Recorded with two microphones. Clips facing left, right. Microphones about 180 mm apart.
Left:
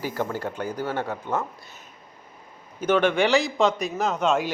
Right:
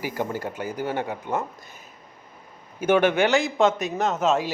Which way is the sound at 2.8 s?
10° right (ahead or behind).